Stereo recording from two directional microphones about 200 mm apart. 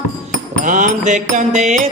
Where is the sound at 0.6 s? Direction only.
40° right (ahead or behind).